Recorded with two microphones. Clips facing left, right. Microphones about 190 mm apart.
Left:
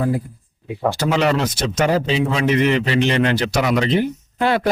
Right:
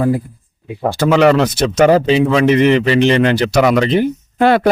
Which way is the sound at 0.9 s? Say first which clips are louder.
Right 9 dB; 60° right (ahead or behind).